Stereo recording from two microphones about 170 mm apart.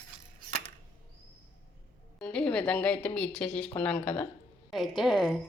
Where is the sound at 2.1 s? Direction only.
5° left (ahead or behind).